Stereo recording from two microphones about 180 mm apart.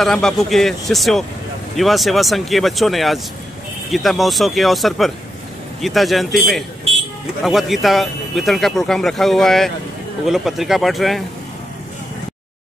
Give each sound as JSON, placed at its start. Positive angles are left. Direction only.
{"t": 0.0, "sound": "speech", "side_deg": 5}